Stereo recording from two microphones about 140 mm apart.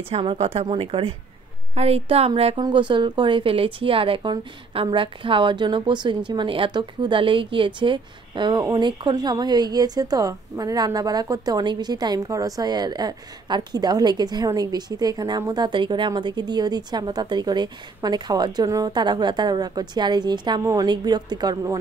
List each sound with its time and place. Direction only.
0.1 s a woman's voice: 40° right (ahead or behind)
2.6 s a woman's voice: 35° right (ahead or behind)